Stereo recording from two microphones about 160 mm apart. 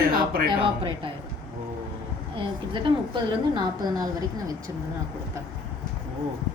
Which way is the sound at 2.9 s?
30° right (ahead or behind).